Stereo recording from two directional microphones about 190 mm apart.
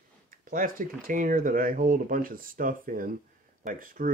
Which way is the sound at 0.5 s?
45° right (ahead or behind).